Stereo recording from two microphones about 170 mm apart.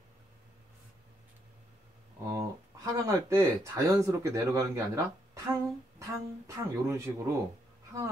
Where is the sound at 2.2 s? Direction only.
20° right (ahead or behind).